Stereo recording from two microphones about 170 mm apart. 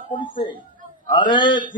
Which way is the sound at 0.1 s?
30° left (ahead or behind).